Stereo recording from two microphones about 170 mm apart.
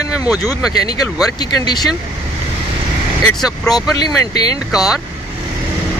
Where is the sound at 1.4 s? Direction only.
25° left (ahead or behind).